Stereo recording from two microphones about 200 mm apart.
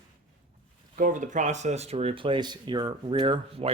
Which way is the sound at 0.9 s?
40° right (ahead or behind).